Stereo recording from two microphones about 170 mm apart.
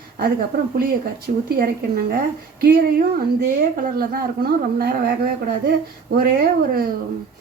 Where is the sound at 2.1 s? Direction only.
60° right (ahead or behind).